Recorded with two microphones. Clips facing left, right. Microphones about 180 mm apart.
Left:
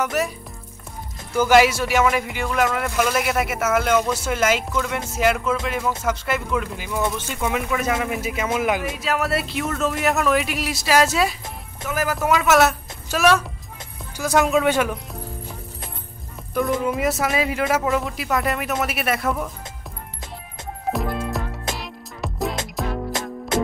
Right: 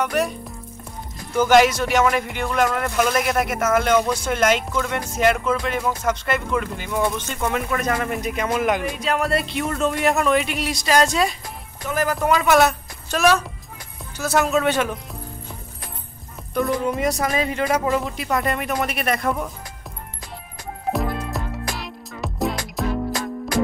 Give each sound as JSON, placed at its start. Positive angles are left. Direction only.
{"t": 0.0, "sound": "speech", "side_deg": 5}
{"t": 1.3, "sound": "speech", "side_deg": 5}
{"t": 16.8, "sound": "speech", "side_deg": 5}
{"t": 20.9, "sound": "music", "side_deg": 0}
{"t": 23.2, "sound": "music", "side_deg": 20}